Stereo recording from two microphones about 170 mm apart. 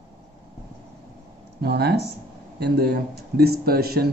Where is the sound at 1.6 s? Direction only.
70° right (ahead or behind).